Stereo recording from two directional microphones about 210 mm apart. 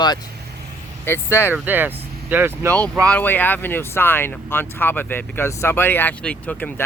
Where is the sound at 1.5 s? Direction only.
10° right (ahead or behind).